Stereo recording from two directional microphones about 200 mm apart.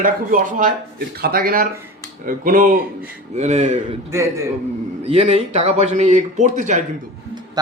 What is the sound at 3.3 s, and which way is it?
Speech, 35° right (ahead or behind).